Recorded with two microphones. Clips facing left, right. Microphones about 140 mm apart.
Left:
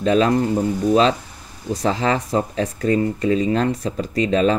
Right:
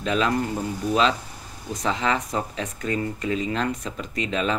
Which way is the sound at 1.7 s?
35° left (ahead or behind).